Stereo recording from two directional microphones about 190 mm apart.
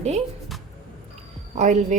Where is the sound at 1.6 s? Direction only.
40° right (ahead or behind).